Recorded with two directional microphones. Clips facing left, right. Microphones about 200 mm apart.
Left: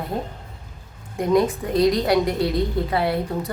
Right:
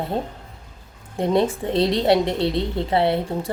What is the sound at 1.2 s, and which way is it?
A woman's voice, 30° right (ahead or behind).